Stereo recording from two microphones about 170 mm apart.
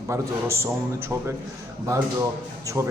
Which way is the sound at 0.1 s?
15° right (ahead or behind).